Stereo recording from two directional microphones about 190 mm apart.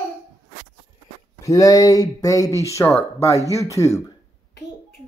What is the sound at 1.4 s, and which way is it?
Speech, 15° left (ahead or behind).